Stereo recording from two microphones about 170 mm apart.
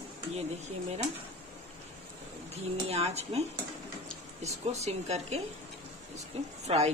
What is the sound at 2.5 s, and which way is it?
Speech, 40° right (ahead or behind).